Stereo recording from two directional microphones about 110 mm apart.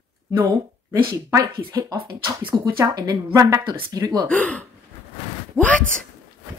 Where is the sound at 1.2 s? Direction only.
25° right (ahead or behind).